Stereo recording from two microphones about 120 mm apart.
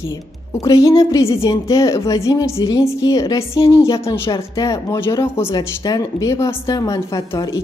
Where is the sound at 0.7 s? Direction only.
25° left (ahead or behind).